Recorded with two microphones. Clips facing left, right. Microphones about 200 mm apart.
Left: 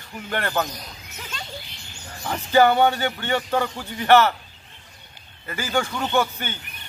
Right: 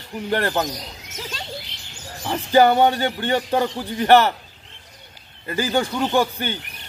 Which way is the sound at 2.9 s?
35° right (ahead or behind).